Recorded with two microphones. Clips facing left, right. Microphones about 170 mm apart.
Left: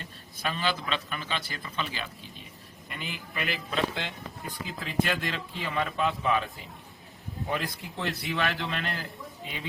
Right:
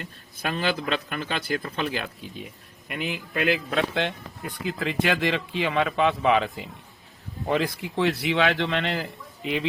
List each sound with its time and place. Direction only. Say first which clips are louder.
0.4 s a man's voice: right 4 dB; 55° right (ahead or behind)
2.9 s a man's voice: right 8 dB; 75° right (ahead or behind)
4.6 s a man's voice: right 4 dB; 70° right (ahead or behind)